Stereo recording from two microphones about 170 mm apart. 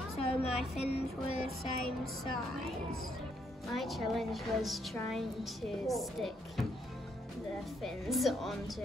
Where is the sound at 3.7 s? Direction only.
Centre (ahead or behind).